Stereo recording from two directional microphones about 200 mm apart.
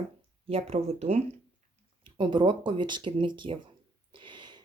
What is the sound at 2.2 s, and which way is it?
Speech, 25° right (ahead or behind).